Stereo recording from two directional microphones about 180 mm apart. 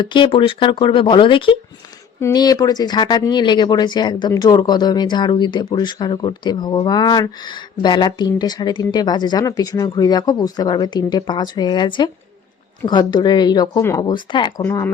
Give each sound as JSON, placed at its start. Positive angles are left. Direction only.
{"t": 0.0, "sound": "speech", "side_deg": 25}
{"t": 14.6, "sound": "speech", "side_deg": 15}